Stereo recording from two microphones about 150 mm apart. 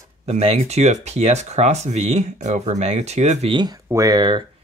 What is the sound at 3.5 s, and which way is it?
Speech, 30° right (ahead or behind).